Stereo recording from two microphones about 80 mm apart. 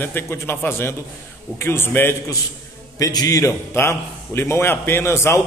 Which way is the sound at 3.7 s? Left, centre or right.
Left.